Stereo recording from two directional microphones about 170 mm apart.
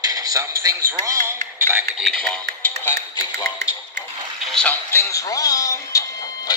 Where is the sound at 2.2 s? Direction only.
10° left (ahead or behind).